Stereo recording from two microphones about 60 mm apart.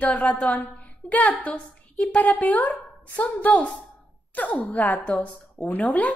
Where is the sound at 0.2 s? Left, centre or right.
Left.